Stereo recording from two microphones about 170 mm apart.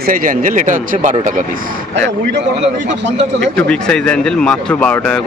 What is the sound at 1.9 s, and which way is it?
Speech, 90° right.